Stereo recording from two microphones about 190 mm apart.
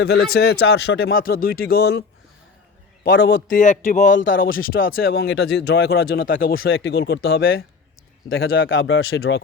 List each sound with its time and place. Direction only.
0.0 s speech: 60° left (ahead or behind)
3.0 s a man's voice: 70° left (ahead or behind)
3.5 s speech: 40° left (ahead or behind)
4.4 s speech: 90° left
5.0 s speech: 55° left (ahead or behind)
6.7 s speech: 65° left (ahead or behind)
8.4 s speech: 90° left